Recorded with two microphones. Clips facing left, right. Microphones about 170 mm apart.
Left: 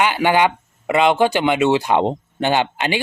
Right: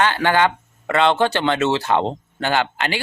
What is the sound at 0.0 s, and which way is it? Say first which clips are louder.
Speech: left 1 dB; 15° left (ahead or behind).